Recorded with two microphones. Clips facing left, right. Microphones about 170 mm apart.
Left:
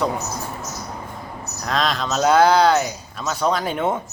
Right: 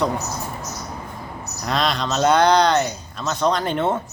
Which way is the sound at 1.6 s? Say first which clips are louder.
Even; centre (ahead or behind).